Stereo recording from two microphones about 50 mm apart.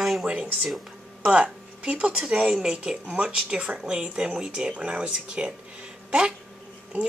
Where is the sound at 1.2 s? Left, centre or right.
Right.